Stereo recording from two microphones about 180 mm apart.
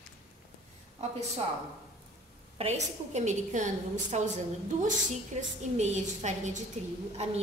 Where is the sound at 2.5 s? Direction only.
35° right (ahead or behind).